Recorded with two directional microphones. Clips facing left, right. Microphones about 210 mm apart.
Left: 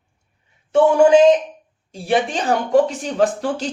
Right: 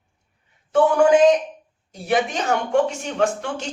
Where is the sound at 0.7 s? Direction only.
25° left (ahead or behind).